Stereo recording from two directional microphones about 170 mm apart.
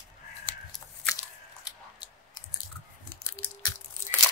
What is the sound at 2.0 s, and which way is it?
Chewing, 25° left (ahead or behind).